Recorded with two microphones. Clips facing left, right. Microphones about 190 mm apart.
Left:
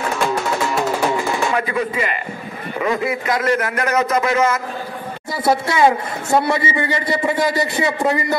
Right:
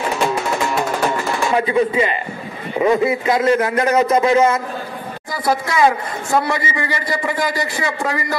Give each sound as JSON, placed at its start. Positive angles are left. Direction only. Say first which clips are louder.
{"t": 0.3, "sound": "music", "louder": "even", "side_deg": 0}
{"t": 1.6, "sound": "a man's voice", "louder": "right 5 dB", "side_deg": -25}
{"t": 5.3, "sound": "a man's voice", "louder": "left 2 dB", "side_deg": 25}